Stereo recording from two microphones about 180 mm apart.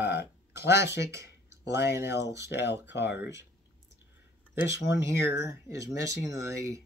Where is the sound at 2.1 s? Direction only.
70° left (ahead or behind).